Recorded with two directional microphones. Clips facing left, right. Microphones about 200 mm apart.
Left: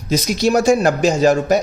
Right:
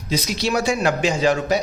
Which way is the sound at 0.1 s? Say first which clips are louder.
Left 6 dB; 45° left (ahead or behind).